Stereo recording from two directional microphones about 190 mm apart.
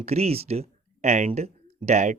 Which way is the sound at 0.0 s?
35° right (ahead or behind).